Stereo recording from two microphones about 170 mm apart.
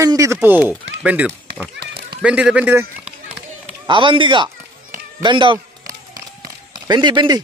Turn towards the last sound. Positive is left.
turn(degrees=-25)  # may be behind; listen again after turning